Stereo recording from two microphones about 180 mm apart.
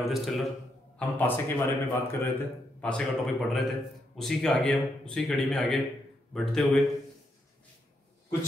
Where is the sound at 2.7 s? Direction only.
5° left (ahead or behind).